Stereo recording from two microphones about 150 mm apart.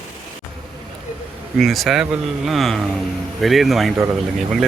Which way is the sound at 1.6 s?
Centre (ahead or behind).